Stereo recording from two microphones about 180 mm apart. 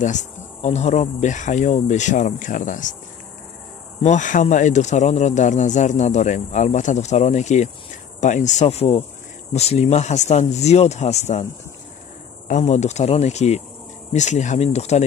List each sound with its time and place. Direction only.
0.0 s insect: 40° left (ahead or behind)
4.0 s speech: 45° left (ahead or behind)
12.4 s speech: 40° left (ahead or behind)